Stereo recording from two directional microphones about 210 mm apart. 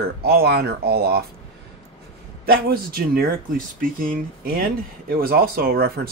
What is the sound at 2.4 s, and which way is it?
Speech, 45° right (ahead or behind).